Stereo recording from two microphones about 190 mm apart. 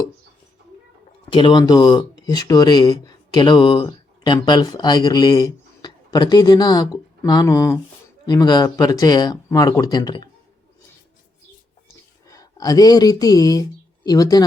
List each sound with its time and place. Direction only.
1.3 s speech: 25° left (ahead or behind)
12.3 s speech: 20° left (ahead or behind)